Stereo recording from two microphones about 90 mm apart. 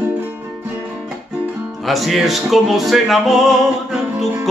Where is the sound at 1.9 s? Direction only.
Centre (ahead or behind).